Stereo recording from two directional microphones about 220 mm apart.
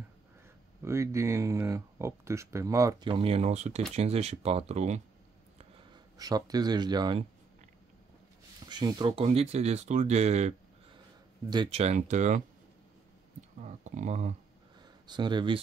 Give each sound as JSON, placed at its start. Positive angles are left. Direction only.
{"t": 0.8, "sound": "speech", "side_deg": -10}
{"t": 6.1, "sound": "speech", "side_deg": -15}
{"t": 8.6, "sound": "speech", "side_deg": -20}
{"t": 11.5, "sound": "speech", "side_deg": -25}
{"t": 13.6, "sound": "speech", "side_deg": -35}
{"t": 14.8, "sound": "a sound", "side_deg": -20}